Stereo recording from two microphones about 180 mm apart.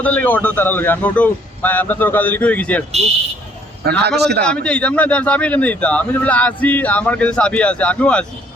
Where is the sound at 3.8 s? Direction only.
60° right (ahead or behind).